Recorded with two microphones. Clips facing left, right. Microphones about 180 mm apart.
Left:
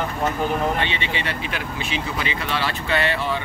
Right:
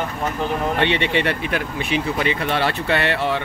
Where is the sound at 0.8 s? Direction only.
65° right (ahead or behind).